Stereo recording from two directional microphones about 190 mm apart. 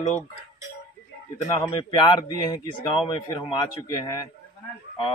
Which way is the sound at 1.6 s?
25° left (ahead or behind).